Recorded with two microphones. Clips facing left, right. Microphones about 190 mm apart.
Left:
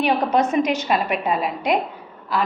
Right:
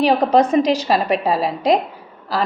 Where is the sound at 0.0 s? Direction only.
35° right (ahead or behind).